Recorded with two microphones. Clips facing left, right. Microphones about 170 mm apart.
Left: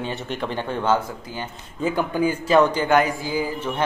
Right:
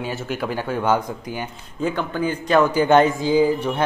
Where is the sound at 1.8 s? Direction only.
10° left (ahead or behind).